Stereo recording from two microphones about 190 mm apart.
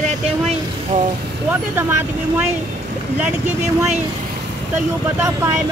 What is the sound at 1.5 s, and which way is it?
Speech, 10° right (ahead or behind).